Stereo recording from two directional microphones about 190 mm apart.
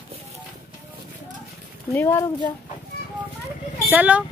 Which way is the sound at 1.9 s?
15° left (ahead or behind).